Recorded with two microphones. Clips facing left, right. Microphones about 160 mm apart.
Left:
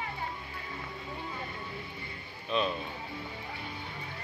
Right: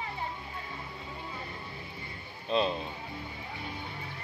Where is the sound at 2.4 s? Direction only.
30° right (ahead or behind).